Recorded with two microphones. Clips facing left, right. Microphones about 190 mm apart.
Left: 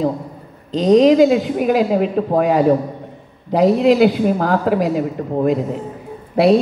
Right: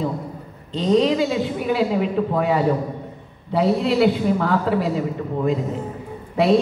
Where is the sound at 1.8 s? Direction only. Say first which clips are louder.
Left 4 dB; 45° left (ahead or behind).